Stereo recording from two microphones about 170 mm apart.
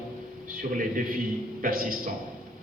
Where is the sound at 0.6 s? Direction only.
55° right (ahead or behind).